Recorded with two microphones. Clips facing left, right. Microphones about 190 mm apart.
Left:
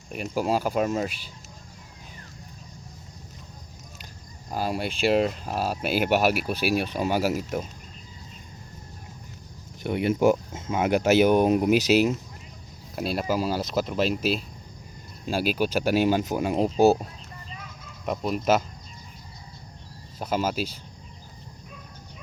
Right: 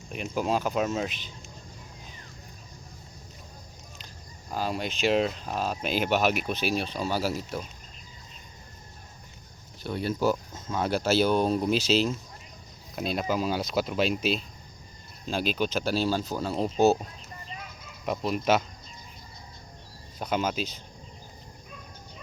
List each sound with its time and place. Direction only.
0.1 s speech: 5° left (ahead or behind)
4.5 s speech: 10° left (ahead or behind)
9.8 s speech: 20° left (ahead or behind)
18.0 s speech: centre (ahead or behind)
20.1 s speech: 5° left (ahead or behind)